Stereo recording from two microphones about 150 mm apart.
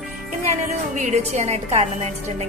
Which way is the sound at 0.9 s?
55° right (ahead or behind).